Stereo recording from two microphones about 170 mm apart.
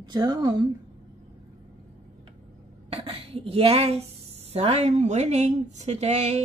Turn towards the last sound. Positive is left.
turn(degrees=-40)  # may be behind; listen again after turning